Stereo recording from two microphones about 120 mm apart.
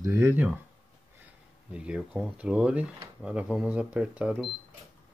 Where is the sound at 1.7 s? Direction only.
10° right (ahead or behind).